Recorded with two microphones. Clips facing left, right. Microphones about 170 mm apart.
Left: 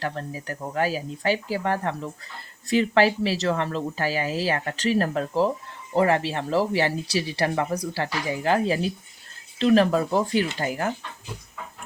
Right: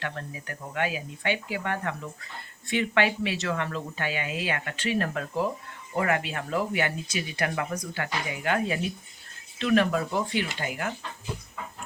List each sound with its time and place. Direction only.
0.0 s speech: 35° left (ahead or behind)